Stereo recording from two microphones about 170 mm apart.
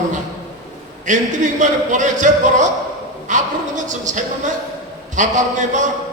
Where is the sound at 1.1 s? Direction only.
45° right (ahead or behind).